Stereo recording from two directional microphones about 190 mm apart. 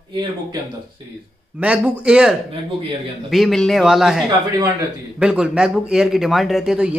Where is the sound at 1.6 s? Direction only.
5° right (ahead or behind).